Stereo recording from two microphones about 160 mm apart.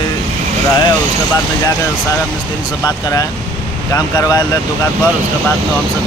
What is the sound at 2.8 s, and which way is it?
Speech, 20° left (ahead or behind).